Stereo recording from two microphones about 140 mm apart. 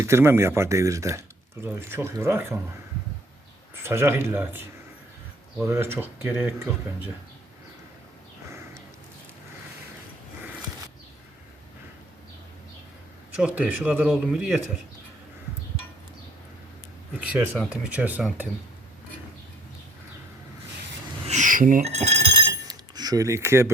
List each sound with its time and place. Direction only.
0.0 s speech: 20° right (ahead or behind)
3.8 s speech: 15° right (ahead or behind)
5.6 s speech: 20° right (ahead or behind)
8.4 s a sound: 20° right (ahead or behind)
13.4 s speech: 10° right (ahead or behind)
17.2 s speech: 10° right (ahead or behind)
21.2 s cash register: 60° right (ahead or behind)
21.8 s glass: 50° right (ahead or behind)
22.4 s chink: 25° right (ahead or behind)